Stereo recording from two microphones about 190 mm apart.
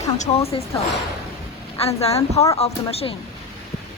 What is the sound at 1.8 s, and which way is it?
A woman's voice, 35° left (ahead or behind).